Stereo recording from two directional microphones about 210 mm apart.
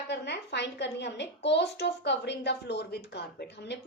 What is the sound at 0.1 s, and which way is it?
A woman's voice, 55° left (ahead or behind).